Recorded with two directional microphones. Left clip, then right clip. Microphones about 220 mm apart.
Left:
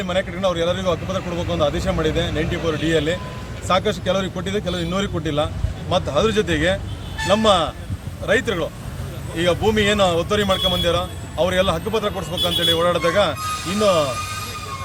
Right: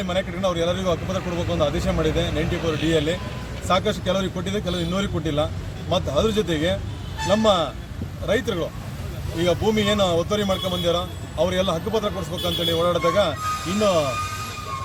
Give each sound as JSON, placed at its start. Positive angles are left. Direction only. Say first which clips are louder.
{"t": 0.0, "sound": "speech", "louder": "left 3 dB", "side_deg": 5}